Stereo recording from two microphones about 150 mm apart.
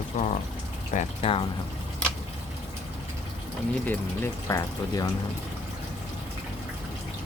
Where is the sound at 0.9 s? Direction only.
40° left (ahead or behind).